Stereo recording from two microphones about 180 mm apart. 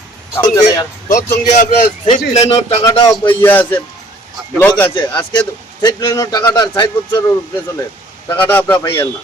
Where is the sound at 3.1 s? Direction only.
10° left (ahead or behind).